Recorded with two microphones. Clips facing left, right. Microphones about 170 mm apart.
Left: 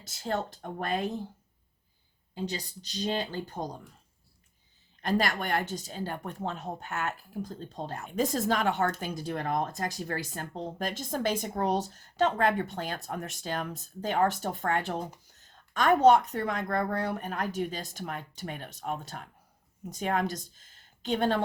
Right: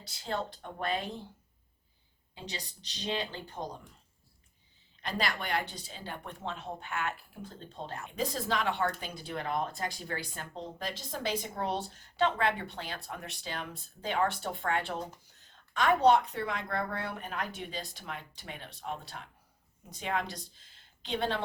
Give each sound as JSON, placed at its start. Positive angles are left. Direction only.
{"t": 0.0, "sound": "a woman's voice", "side_deg": 45}
{"t": 2.6, "sound": "a woman's voice", "side_deg": 45}
{"t": 5.0, "sound": "a woman's voice", "side_deg": 45}